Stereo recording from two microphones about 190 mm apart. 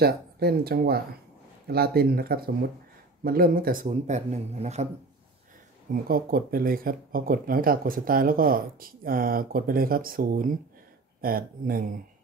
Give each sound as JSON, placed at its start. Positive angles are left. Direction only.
{"t": 0.0, "sound": "speech", "side_deg": -55}
{"t": 6.0, "sound": "speech", "side_deg": -50}